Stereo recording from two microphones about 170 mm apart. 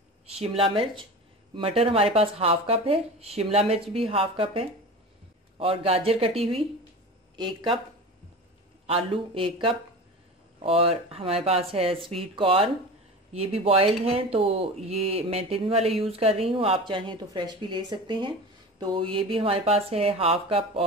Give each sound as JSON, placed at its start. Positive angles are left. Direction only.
{"t": 0.3, "sound": "speech", "side_deg": -35}
{"t": 8.8, "sound": "speech", "side_deg": -30}